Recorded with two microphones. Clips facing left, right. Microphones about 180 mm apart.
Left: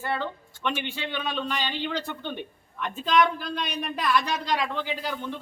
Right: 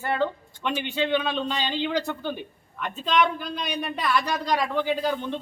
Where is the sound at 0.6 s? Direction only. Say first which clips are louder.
Right 4 dB; 15° right (ahead or behind).